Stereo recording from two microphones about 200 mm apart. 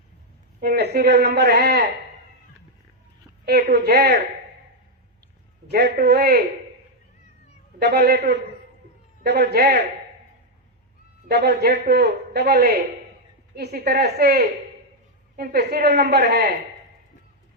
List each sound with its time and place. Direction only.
0.6 s a woman's voice: 55° right (ahead or behind)
3.4 s a woman's voice: 55° right (ahead or behind)
5.7 s a woman's voice: 60° right (ahead or behind)
9.2 s a woman's voice: 50° right (ahead or behind)
11.3 s a woman's voice: 60° right (ahead or behind)